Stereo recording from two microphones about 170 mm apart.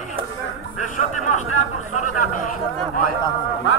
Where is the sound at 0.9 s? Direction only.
50° left (ahead or behind).